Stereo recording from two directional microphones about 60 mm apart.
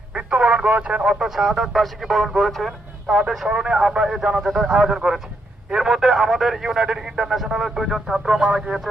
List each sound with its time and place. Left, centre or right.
0.1 s speech: centre
1.1 s speech: centre
4.6 s speech: right
4.9 s speech: centre